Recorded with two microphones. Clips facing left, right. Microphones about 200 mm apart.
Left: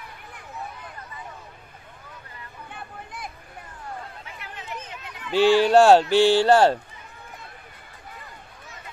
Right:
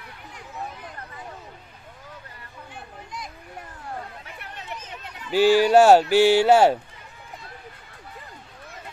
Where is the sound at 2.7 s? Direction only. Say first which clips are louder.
Right 1 dB; 55° left (ahead or behind).